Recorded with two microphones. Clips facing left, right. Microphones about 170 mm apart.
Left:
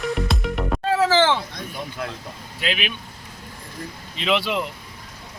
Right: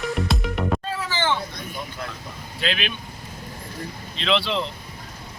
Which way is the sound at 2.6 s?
10° left (ahead or behind).